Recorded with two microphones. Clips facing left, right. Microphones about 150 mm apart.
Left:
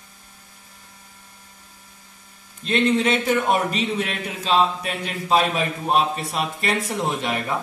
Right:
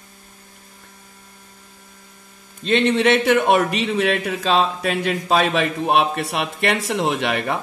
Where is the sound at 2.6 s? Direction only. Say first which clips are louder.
Right 3 dB; 90° right.